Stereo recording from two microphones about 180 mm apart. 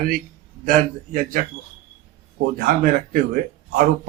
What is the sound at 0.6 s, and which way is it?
Speech, 50° right (ahead or behind).